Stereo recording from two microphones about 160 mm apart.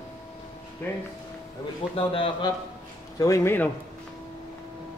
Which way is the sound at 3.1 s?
20° left (ahead or behind).